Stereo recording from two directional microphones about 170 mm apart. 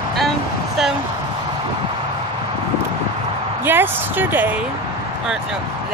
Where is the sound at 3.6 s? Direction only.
10° right (ahead or behind).